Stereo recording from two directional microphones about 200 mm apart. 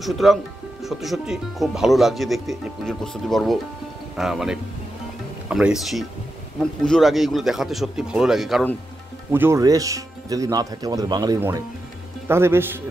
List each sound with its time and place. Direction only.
0.0 s speech: centre (ahead or behind)
9.3 s speech: 10° right (ahead or behind)